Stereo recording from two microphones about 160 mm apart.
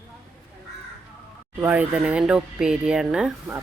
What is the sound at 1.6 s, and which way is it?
Speech, 10° right (ahead or behind).